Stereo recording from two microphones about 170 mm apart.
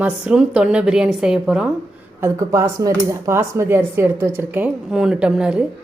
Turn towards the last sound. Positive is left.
turn(degrees=-5)  # may be behind; listen again after turning